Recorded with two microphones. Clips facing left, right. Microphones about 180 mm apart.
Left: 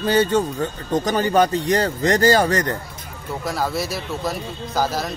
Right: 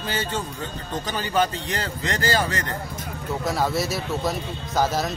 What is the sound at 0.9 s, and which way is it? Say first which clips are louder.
A man's voice: left 7 dB; 45° left (ahead or behind).